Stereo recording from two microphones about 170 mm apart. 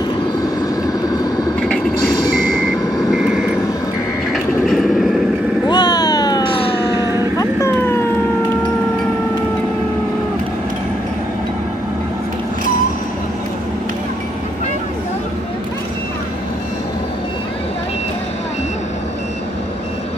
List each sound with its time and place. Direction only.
0.8 s vehicle: 20° left (ahead or behind)
3.1 s vehicle: centre (ahead or behind)
5.7 s cat: 25° left (ahead or behind)
7.3 s a sound: 15° left (ahead or behind)